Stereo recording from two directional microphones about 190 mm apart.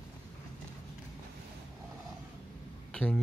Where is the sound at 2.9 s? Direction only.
5° left (ahead or behind).